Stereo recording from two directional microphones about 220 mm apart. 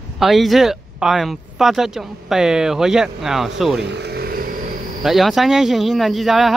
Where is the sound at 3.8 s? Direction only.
50° right (ahead or behind).